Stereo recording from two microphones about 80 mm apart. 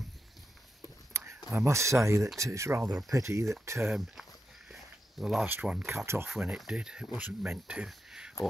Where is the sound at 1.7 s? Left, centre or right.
Right.